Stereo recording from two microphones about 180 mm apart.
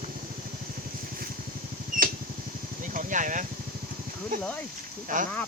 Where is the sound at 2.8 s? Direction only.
45° right (ahead or behind).